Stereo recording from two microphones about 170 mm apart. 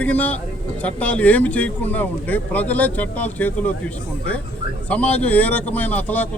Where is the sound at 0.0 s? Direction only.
10° left (ahead or behind).